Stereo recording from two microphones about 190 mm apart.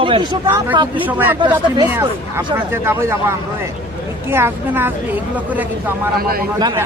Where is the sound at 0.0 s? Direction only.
25° right (ahead or behind).